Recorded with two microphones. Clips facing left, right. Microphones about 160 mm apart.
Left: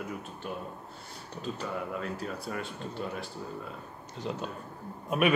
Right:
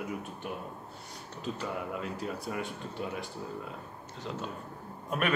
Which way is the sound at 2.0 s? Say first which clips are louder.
Even; 15° right (ahead or behind).